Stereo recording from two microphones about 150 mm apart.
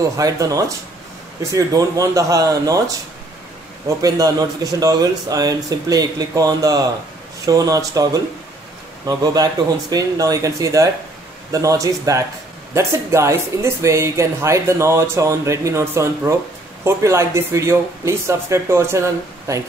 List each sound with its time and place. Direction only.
0.2 s speech: 25° right (ahead or behind)
4.0 s speech: 25° right (ahead or behind)